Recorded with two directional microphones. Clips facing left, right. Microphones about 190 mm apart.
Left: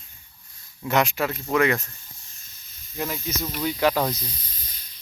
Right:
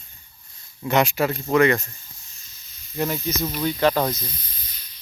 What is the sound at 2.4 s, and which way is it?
Snake, 50° left (ahead or behind).